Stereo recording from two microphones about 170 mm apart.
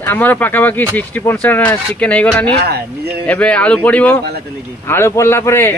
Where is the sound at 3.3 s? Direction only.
5° left (ahead or behind).